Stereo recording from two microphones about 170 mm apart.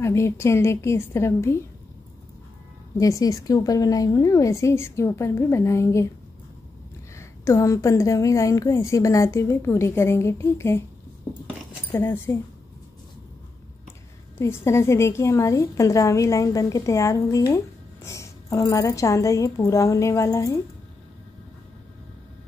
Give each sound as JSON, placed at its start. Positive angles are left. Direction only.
{"t": 0.0, "sound": "a woman's voice", "side_deg": 15}
{"t": 3.0, "sound": "a woman's voice", "side_deg": 20}
{"t": 7.2, "sound": "a woman's voice", "side_deg": 15}
{"t": 11.9, "sound": "a woman's voice", "side_deg": 15}
{"t": 14.4, "sound": "a woman's voice", "side_deg": 15}